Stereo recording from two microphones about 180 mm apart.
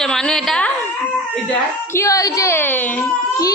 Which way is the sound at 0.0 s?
5° left (ahead or behind).